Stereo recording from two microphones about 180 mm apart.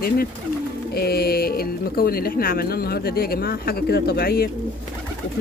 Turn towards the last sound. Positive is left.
turn(degrees=55)  # may be behind; listen again after turning